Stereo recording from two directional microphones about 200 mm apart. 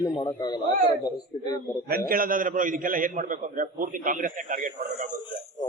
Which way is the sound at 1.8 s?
45° right (ahead or behind).